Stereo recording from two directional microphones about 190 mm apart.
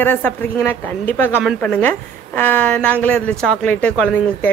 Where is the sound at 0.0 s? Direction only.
10° left (ahead or behind).